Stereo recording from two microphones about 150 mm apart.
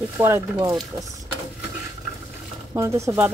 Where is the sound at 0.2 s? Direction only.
15° right (ahead or behind).